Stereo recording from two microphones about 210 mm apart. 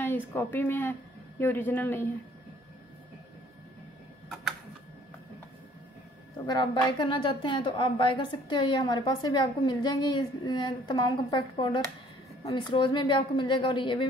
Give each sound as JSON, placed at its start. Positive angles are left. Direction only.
{"t": 0.0, "sound": "speech", "side_deg": 10}
{"t": 6.4, "sound": "a woman's voice", "side_deg": 20}